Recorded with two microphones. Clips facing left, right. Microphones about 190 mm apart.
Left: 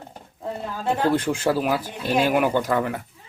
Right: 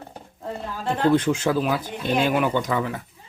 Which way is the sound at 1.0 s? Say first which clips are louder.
Right 3 dB; 10° left (ahead or behind).